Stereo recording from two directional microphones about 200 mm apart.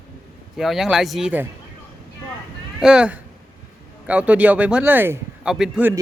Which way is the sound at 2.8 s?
5° right (ahead or behind).